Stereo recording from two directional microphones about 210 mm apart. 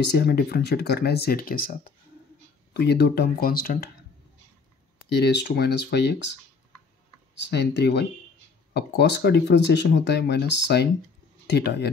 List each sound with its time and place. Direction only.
0.0 s speech: 50° left (ahead or behind)
5.2 s speech: 50° left (ahead or behind)
7.4 s speech: 55° left (ahead or behind)